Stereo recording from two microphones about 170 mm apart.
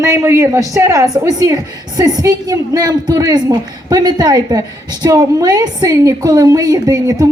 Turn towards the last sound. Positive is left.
turn(degrees=-20)  # may be behind; listen again after turning